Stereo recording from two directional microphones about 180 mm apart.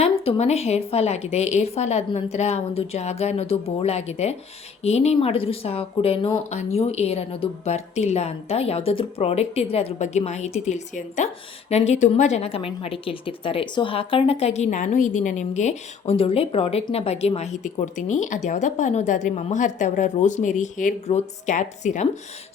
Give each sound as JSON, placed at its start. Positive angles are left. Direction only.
{"t": 0.0, "sound": "a woman's voice", "side_deg": 35}